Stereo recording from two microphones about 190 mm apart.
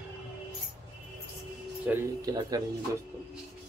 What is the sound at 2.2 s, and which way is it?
Speech, 20° right (ahead or behind).